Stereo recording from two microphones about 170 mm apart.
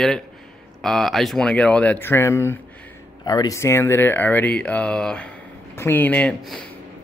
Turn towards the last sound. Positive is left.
turn(degrees=5)  # may be behind; listen again after turning